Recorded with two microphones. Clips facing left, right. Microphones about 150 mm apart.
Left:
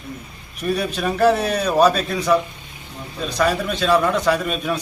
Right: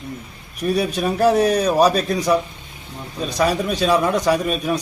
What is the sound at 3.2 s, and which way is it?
A man's voice, 10° right (ahead or behind).